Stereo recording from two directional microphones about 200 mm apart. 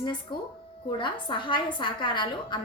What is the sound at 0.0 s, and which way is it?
A woman's voice, 25° left (ahead or behind).